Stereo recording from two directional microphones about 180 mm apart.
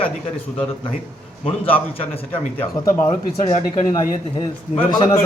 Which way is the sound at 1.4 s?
30° left (ahead or behind).